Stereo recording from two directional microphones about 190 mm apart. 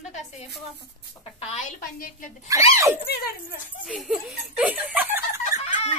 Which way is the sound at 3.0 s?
55° left (ahead or behind).